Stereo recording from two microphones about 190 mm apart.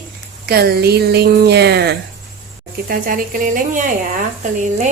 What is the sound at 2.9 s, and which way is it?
Speech, 45° right (ahead or behind).